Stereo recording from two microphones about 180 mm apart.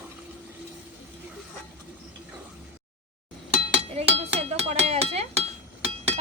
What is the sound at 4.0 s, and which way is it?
Speech, 35° right (ahead or behind).